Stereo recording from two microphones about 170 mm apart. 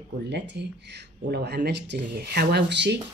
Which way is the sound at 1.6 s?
75° right (ahead or behind).